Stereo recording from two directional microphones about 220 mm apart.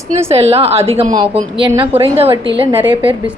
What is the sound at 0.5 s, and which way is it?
A woman's voice, 25° right (ahead or behind).